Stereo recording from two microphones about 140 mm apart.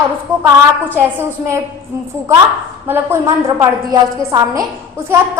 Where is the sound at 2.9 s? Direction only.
15° right (ahead or behind).